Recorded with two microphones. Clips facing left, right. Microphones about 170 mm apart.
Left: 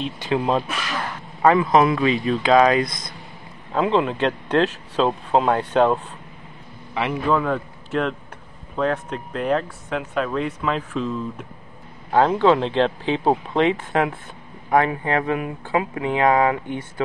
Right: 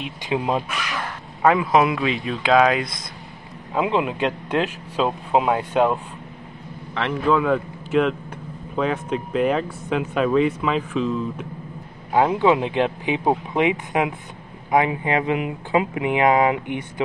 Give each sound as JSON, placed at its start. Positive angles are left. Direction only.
{"t": 0.0, "sound": "speech", "side_deg": -10}
{"t": 7.0, "sound": "speech", "side_deg": 5}
{"t": 12.1, "sound": "speech", "side_deg": -15}